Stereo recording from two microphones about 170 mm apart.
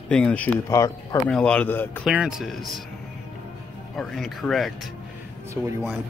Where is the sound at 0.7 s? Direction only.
20° left (ahead or behind).